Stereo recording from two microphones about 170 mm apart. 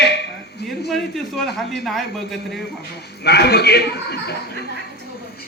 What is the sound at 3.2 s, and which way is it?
A man's voice, 70° left (ahead or behind).